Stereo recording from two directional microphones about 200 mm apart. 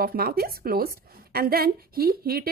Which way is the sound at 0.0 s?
50° right (ahead or behind).